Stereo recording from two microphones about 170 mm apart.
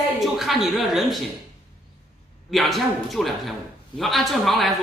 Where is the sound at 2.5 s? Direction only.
Centre (ahead or behind).